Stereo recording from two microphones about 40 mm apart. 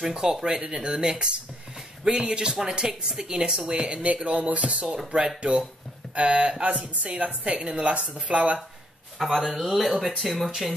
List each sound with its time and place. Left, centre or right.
0.1 s a woman's voice: centre; by 4.8 s right
4.8 s speech: centre
6.1 s a woman's voice: right
9.2 s speech: centre